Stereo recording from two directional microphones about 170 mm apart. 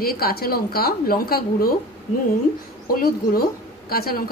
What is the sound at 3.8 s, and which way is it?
Speech, 60° left (ahead or behind).